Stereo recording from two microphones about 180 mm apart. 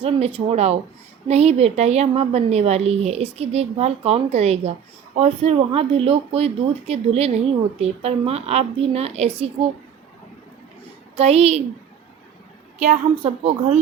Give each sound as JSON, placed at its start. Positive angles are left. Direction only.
{"t": 0.0, "sound": "speech", "side_deg": -30}
{"t": 11.2, "sound": "speech", "side_deg": -35}
{"t": 12.8, "sound": "speech", "side_deg": -35}